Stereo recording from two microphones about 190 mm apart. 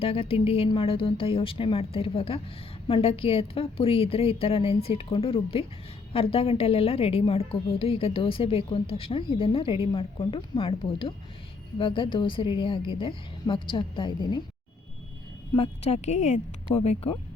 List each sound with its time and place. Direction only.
0.0 s a woman's voice: 30° left (ahead or behind)
15.5 s speech: 30° left (ahead or behind)